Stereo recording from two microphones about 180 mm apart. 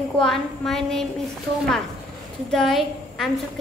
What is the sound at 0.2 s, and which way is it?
Speech, centre (ahead or behind).